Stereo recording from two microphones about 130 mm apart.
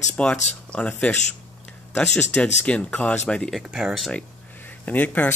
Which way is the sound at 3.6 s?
5° right (ahead or behind).